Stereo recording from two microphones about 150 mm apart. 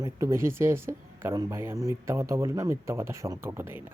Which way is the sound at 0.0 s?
20° right (ahead or behind).